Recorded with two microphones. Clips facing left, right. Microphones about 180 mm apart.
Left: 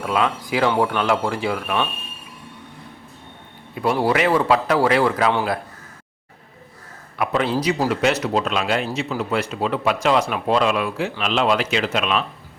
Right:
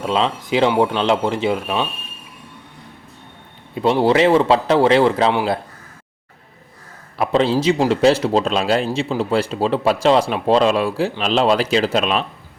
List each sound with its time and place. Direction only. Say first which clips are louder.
0.0 s a man's voice: right 2 dB; 25° right (ahead or behind)
3.8 s a man's voice: right 5 dB; 25° right (ahead or behind)
7.2 s a man's voice: right 4 dB; 30° right (ahead or behind)